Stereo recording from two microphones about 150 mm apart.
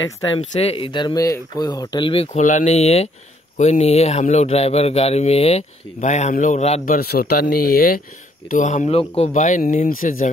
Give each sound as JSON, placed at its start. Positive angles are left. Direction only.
{"t": 0.6, "sound": "speech", "side_deg": 40}
{"t": 2.3, "sound": "speech", "side_deg": 55}
{"t": 6.9, "sound": "speech", "side_deg": 90}
{"t": 8.5, "sound": "speech", "side_deg": 55}